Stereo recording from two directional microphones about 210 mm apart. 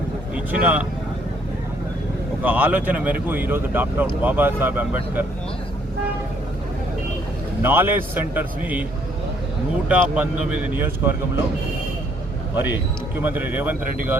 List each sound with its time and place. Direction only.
0.3 s speech: 5° right (ahead or behind)
2.4 s speech: 10° right (ahead or behind)
7.6 s speech: 10° right (ahead or behind)
9.9 s speech: 5° right (ahead or behind)
12.5 s speech: 10° right (ahead or behind)